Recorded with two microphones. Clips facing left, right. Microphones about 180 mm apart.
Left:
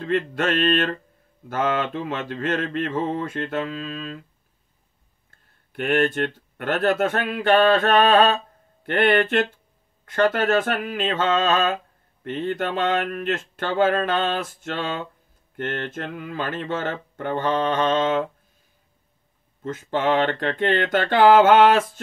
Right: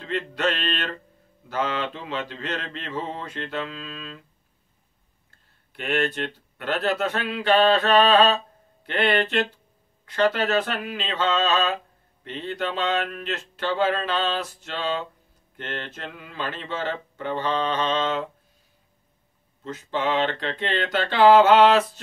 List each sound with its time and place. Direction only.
0.0 s mantra: 50° left (ahead or behind)
5.7 s mantra: 50° left (ahead or behind)
19.6 s mantra: 50° left (ahead or behind)